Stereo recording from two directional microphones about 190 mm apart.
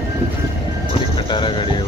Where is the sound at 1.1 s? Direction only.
25° left (ahead or behind).